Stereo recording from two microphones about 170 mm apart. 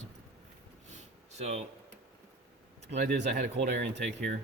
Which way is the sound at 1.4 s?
40° right (ahead or behind).